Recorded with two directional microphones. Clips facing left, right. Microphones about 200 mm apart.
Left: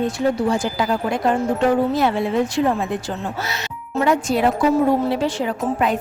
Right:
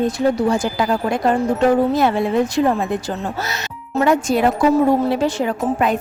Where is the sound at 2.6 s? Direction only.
45° right (ahead or behind).